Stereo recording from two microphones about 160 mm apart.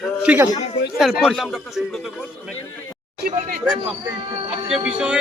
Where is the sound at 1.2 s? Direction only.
Centre (ahead or behind).